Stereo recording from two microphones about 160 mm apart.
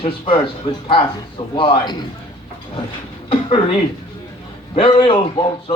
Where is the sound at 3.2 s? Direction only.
35° left (ahead or behind).